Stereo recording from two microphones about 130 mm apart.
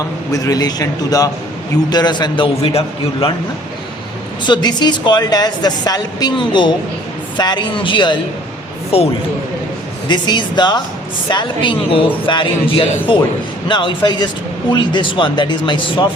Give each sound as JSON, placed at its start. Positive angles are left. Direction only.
{"t": 0.3, "sound": "a man's voice", "side_deg": 25}
{"t": 4.4, "sound": "a woman's voice", "side_deg": 35}
{"t": 8.9, "sound": "a man's voice", "side_deg": 50}
{"t": 10.1, "sound": "a woman's voice", "side_deg": 35}